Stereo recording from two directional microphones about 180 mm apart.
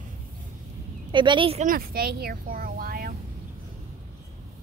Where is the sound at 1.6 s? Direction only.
55° right (ahead or behind).